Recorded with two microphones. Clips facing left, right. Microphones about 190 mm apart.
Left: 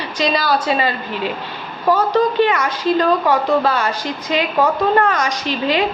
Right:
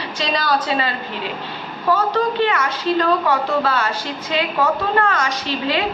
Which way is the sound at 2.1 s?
15° left (ahead or behind).